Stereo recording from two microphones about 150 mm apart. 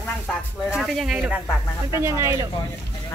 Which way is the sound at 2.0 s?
15° right (ahead or behind).